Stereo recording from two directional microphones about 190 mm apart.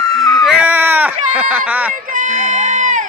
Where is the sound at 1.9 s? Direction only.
45° right (ahead or behind).